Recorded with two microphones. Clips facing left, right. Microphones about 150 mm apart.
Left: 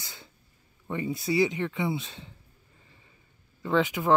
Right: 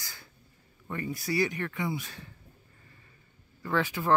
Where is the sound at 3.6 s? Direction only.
20° left (ahead or behind).